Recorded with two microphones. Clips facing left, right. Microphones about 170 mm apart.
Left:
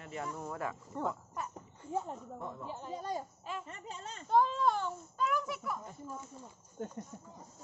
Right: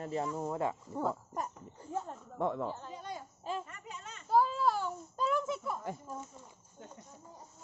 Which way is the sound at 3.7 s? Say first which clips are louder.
Left 3 dB; 30° left (ahead or behind).